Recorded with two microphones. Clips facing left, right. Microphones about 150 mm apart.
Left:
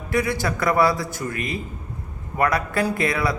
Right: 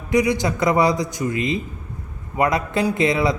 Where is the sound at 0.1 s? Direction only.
20° right (ahead or behind).